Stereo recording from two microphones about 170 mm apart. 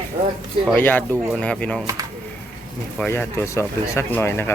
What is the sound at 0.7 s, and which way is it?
Speech, 10° left (ahead or behind).